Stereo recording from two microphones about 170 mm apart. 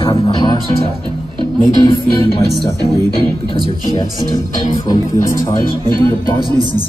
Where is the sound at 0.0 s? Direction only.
30° left (ahead or behind).